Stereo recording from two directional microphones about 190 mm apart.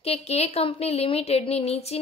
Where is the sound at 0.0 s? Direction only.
35° left (ahead or behind).